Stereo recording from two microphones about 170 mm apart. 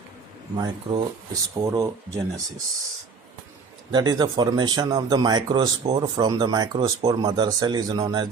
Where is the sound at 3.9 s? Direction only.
25° right (ahead or behind).